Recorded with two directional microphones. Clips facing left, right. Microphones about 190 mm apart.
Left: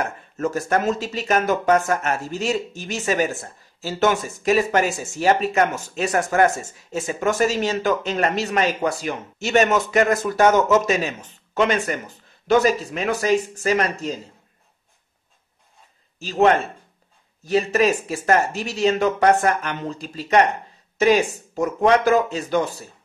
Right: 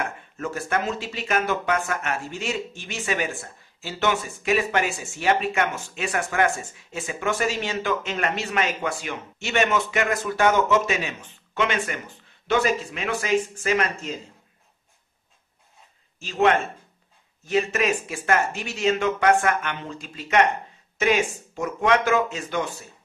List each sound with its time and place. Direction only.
0.0 s speech: 40° left (ahead or behind)
16.2 s speech: 35° left (ahead or behind)